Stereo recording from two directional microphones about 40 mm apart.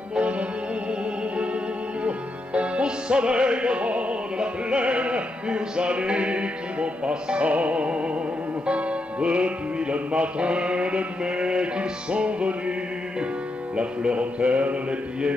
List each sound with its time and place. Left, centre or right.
0.1 s music: right
2.0 s music: right
13.7 s music: right